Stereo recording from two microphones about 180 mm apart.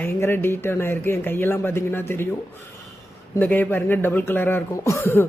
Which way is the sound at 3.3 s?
10° left (ahead or behind).